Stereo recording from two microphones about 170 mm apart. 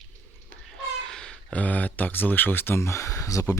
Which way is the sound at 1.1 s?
5° left (ahead or behind).